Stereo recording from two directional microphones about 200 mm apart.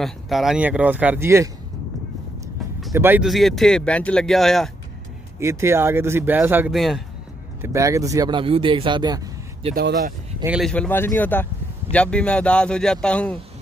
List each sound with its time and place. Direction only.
0.0 s speech: centre (ahead or behind)
2.9 s speech: 10° right (ahead or behind)
5.4 s speech: 15° right (ahead or behind)
7.6 s speech: 15° right (ahead or behind)
9.8 s speech: 50° right (ahead or behind)
10.4 s speech: 5° right (ahead or behind)
10.7 s speech: 10° left (ahead or behind)